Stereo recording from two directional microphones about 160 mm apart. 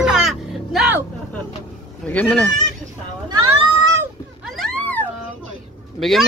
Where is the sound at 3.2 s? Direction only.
25° right (ahead or behind).